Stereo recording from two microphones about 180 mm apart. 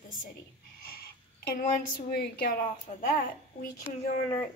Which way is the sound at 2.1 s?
60° left (ahead or behind).